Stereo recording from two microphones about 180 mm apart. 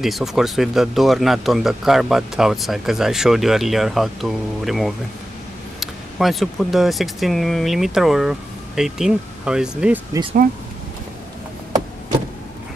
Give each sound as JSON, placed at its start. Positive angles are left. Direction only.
{"t": 0.0, "sound": "speech", "side_deg": 0}